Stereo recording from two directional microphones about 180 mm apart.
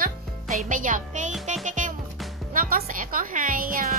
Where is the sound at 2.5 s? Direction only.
50° right (ahead or behind).